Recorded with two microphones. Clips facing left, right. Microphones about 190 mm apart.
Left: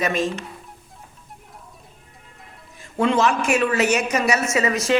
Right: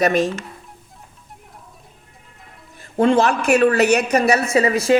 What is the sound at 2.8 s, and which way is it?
Speech, 55° right (ahead or behind).